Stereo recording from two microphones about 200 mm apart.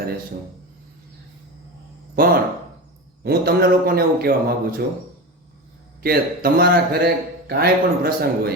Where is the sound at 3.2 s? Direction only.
50° right (ahead or behind).